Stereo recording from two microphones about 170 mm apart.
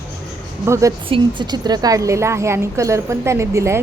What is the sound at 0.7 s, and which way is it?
A woman's voice, 20° right (ahead or behind).